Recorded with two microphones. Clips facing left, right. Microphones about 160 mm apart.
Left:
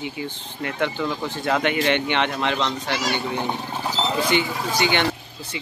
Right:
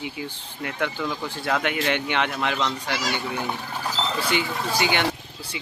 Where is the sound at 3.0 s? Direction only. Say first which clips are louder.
Left 3 dB; 20° left (ahead or behind).